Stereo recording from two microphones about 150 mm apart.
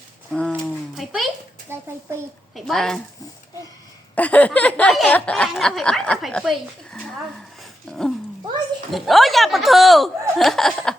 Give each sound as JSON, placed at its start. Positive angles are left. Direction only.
{"t": 0.3, "sound": "a sound", "side_deg": 5}
{"t": 1.7, "sound": "a child's voice", "side_deg": -15}
{"t": 2.6, "sound": "speech", "side_deg": 0}
{"t": 4.1, "sound": "speech", "side_deg": 10}